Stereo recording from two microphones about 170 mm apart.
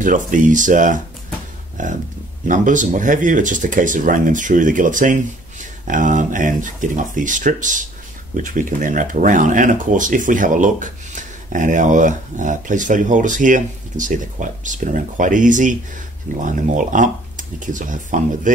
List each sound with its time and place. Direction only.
0.0 s speech: 50° right (ahead or behind)